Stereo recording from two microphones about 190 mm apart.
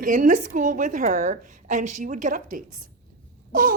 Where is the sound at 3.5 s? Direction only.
45° right (ahead or behind).